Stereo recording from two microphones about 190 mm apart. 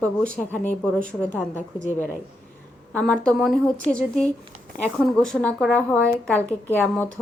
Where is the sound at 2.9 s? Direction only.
5° left (ahead or behind).